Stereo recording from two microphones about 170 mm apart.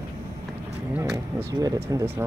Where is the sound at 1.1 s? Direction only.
20° right (ahead or behind).